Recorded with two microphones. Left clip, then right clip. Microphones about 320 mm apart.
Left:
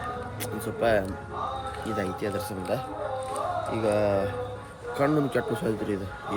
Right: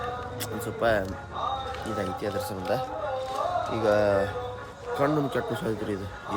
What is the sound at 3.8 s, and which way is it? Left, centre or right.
Speech, right.